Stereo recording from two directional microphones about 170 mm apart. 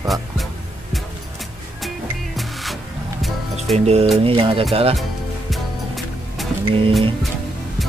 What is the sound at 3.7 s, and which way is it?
Speech, 40° right (ahead or behind).